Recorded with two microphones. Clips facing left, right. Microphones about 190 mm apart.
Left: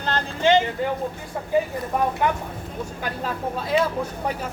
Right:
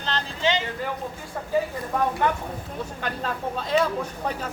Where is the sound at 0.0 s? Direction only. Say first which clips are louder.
Left 4 dB; 50° left (ahead or behind).